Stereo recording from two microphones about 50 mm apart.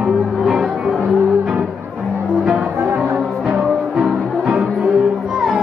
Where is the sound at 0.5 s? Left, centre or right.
Centre.